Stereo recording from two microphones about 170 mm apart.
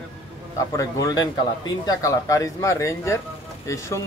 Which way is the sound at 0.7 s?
20° left (ahead or behind).